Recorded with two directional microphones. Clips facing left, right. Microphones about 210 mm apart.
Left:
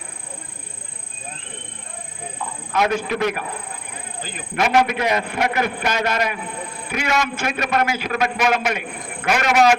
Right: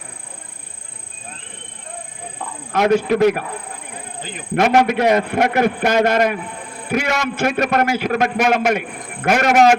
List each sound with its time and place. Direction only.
2.7 s a man's voice: 45° right (ahead or behind)
4.2 s a man's voice: 20° right (ahead or behind)
4.5 s a man's voice: 50° right (ahead or behind)